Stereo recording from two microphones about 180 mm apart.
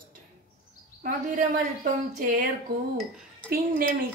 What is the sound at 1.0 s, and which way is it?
Speech, 45° right (ahead or behind).